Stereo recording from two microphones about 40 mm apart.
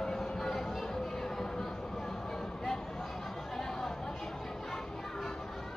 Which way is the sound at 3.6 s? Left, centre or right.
Centre.